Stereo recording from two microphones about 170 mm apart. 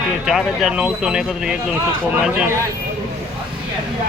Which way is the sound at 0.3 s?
5° right (ahead or behind).